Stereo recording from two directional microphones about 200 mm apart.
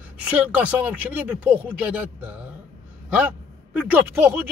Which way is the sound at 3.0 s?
5° right (ahead or behind).